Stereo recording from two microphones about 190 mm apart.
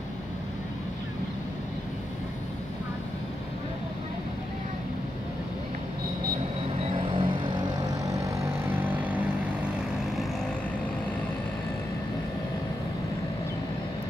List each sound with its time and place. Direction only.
7.0 s vehicle: 25° right (ahead or behind); by 9.2 s 10° right (ahead or behind)